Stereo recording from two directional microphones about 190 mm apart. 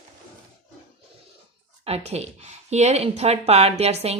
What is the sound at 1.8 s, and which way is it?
Speech, 35° right (ahead or behind).